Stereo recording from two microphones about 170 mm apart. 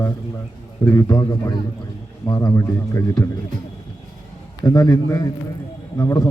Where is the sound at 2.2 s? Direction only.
20° left (ahead or behind).